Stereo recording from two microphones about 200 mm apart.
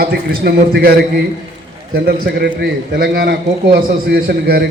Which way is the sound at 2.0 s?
50° right (ahead or behind).